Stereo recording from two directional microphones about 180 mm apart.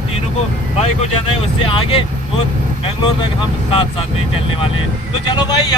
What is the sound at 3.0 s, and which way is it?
Speech, 25° left (ahead or behind).